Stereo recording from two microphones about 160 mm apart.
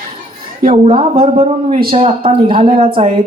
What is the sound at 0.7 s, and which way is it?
Speech, 35° right (ahead or behind).